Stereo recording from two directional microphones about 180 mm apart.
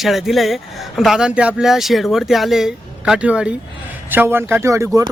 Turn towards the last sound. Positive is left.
turn(degrees=-15)  # may be behind; listen again after turning